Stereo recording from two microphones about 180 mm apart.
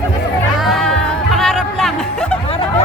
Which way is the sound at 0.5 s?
Centre (ahead or behind).